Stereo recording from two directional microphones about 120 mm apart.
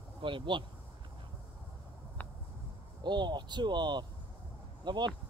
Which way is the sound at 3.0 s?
40° right (ahead or behind).